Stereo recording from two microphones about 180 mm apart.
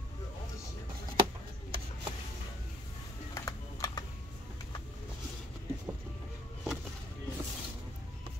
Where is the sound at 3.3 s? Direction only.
20° left (ahead or behind).